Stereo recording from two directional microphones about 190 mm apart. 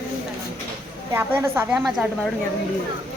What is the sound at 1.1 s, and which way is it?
Speech, 10° right (ahead or behind).